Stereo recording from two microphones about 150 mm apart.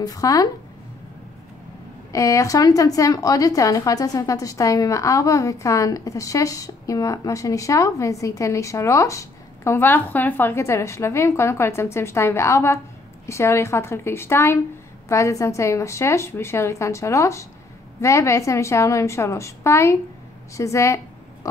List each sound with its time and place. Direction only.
0.0 s a woman's voice: 25° left (ahead or behind)
2.1 s a woman's voice: 20° left (ahead or behind)